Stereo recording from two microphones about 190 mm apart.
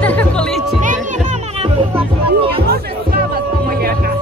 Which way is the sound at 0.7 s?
40° right (ahead or behind).